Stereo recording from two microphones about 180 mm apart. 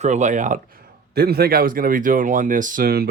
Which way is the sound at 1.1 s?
60° right (ahead or behind).